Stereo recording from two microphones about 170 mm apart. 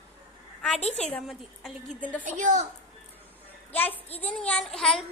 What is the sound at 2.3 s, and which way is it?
Speech, 45° right (ahead or behind).